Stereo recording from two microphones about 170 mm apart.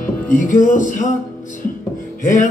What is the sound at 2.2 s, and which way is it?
Music, 50° left (ahead or behind).